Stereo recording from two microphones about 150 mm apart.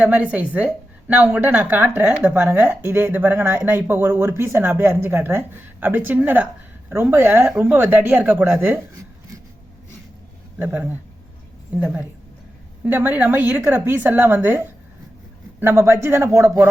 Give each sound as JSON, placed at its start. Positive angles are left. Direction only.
{"t": 0.0, "sound": "speech", "side_deg": -10}
{"t": 10.6, "sound": "speech", "side_deg": -10}